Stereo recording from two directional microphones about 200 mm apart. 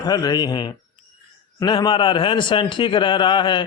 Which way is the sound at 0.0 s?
20° left (ahead or behind).